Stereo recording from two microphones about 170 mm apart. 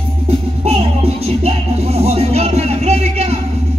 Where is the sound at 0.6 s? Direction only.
35° right (ahead or behind).